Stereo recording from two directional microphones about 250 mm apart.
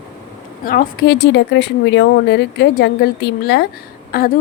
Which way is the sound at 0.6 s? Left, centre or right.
Left.